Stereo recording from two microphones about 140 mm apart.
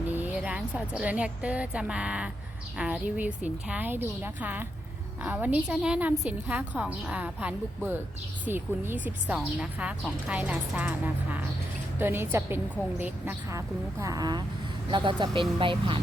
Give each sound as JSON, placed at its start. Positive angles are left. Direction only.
{"t": 0.1, "sound": "a woman's voice", "side_deg": -10}